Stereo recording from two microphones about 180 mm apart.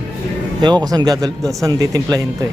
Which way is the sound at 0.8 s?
20° right (ahead or behind).